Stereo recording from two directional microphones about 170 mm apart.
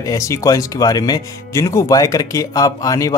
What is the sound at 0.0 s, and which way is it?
Speech, 20° left (ahead or behind).